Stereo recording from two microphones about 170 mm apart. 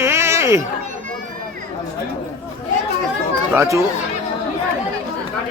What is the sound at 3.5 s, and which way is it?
Speech, 15° right (ahead or behind).